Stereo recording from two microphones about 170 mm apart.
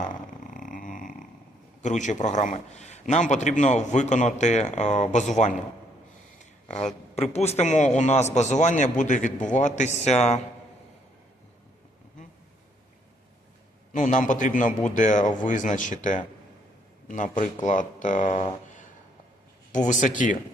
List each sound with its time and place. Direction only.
0.5 s a sound: 50° left (ahead or behind)
1.8 s a man's voice: 45° left (ahead or behind)
13.9 s a man's voice: 50° left (ahead or behind)
19.7 s a man's voice: 45° left (ahead or behind)